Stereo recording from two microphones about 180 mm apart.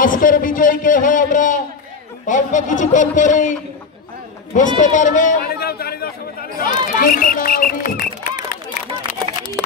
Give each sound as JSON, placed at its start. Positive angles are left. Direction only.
{"t": 0.0, "sound": "speech", "side_deg": 50}
{"t": 4.6, "sound": "a man's voice", "side_deg": 45}